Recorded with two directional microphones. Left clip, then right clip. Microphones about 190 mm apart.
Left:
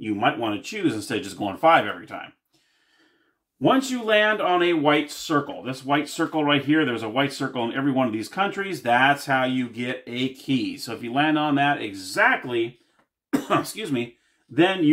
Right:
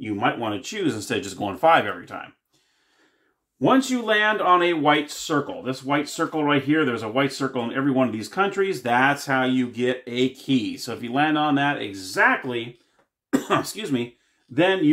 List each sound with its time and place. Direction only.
0.0 s speech: 20° right (ahead or behind)
3.6 s speech: 20° right (ahead or behind)
5.2 s speech: 20° right (ahead or behind)
8.9 s speech: centre (ahead or behind)
9.2 s speech: 20° right (ahead or behind)
10.6 s speech: centre (ahead or behind)
10.9 s speech: 20° right (ahead or behind)
13.5 s speech: 25° right (ahead or behind)